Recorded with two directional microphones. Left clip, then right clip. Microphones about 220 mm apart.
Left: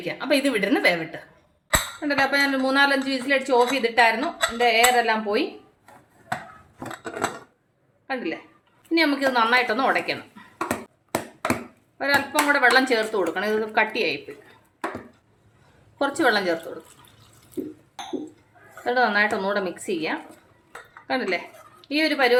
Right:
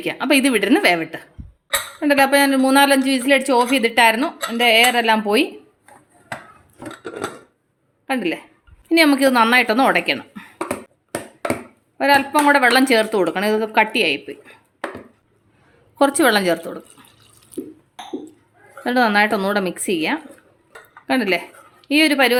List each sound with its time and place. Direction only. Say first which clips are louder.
0.0 s a woman's voice: right 5 dB; 45° right (ahead or behind)
8.0 s a woman's voice: right 6 dB; 50° right (ahead or behind)
11.9 s speech: right 6 dB; 45° right (ahead or behind)
16.0 s speech: right 6 dB; 45° right (ahead or behind)
18.9 s speech: right 4 dB; 45° right (ahead or behind)